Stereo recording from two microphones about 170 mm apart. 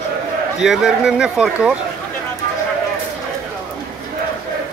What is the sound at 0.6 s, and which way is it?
Speech, centre (ahead or behind).